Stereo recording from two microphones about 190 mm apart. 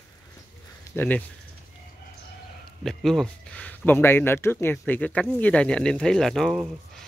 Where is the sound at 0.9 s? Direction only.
10° left (ahead or behind).